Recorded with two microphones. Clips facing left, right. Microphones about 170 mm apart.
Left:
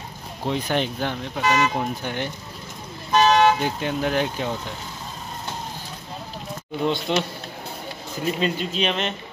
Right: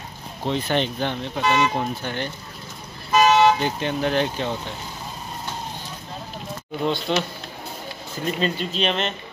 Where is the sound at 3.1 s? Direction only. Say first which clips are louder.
Right 1 dB; 5° right (ahead or behind).